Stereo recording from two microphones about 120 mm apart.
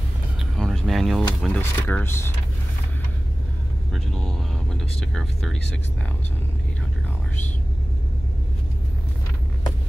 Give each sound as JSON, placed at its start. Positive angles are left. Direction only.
{"t": 0.6, "sound": "a sound", "side_deg": 0}
{"t": 1.5, "sound": "speech", "side_deg": 15}
{"t": 3.9, "sound": "speech", "side_deg": 5}